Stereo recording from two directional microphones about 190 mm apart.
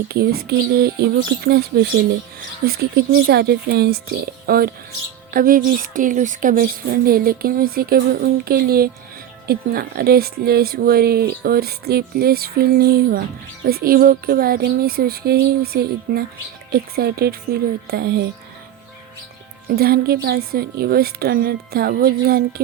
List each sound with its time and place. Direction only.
0.1 s speech: 55° right (ahead or behind)
19.6 s speech: 55° right (ahead or behind)